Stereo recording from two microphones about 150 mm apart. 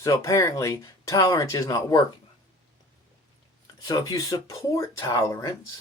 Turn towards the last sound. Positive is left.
turn(degrees=20)  # may be behind; listen again after turning